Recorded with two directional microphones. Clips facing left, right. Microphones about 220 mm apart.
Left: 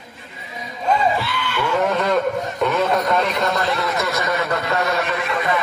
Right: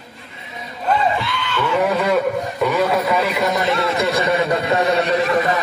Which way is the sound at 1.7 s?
5° right (ahead or behind).